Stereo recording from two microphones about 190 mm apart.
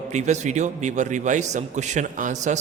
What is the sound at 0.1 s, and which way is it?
A man's voice, 35° right (ahead or behind).